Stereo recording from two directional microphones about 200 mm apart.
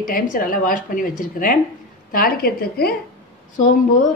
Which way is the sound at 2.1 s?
45° left (ahead or behind).